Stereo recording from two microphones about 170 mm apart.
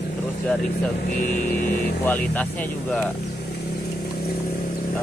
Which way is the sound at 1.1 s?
50° left (ahead or behind).